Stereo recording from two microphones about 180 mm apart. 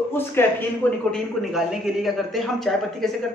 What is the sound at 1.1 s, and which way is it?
A man's voice, centre (ahead or behind).